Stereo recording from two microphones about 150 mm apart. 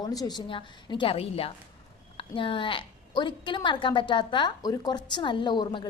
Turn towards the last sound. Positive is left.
turn(degrees=30)  # may be behind; listen again after turning